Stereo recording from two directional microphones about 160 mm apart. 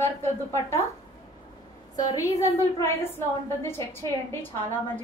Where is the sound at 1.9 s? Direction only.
20° left (ahead or behind).